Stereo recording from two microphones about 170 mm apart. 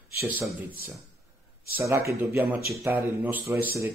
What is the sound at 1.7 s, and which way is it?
A man's voice, 15° right (ahead or behind).